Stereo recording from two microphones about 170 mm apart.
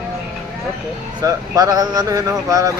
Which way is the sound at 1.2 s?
20° right (ahead or behind).